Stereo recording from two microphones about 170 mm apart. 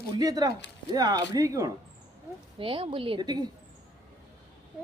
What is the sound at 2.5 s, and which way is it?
Speech, 30° right (ahead or behind).